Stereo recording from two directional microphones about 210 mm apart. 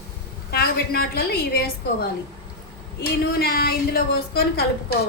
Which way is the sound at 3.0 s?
45° left (ahead or behind).